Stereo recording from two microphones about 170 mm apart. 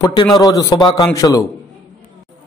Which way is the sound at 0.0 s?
25° left (ahead or behind).